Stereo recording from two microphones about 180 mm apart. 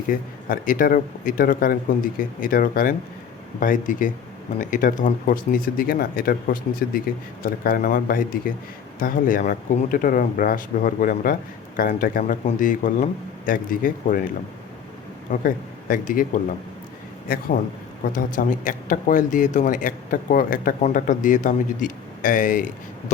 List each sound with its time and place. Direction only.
0.1 s speech: 50° left (ahead or behind)
15.3 s speech: 50° left (ahead or behind)